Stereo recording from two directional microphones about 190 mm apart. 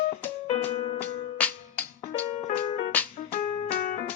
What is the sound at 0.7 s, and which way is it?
Music, 30° left (ahead or behind).